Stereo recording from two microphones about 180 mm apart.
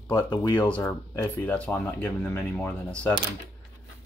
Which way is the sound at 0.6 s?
10° left (ahead or behind).